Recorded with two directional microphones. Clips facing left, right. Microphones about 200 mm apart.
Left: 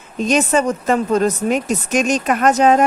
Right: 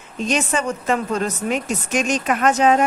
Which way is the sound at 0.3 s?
40° left (ahead or behind).